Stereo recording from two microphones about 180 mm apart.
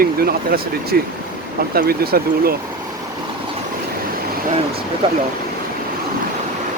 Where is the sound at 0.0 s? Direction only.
55° right (ahead or behind).